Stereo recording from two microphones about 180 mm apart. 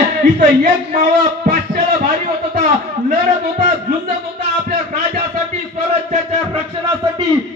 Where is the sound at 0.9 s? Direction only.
45° right (ahead or behind).